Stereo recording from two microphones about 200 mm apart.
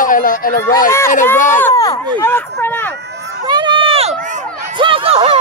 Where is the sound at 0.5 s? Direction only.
15° left (ahead or behind).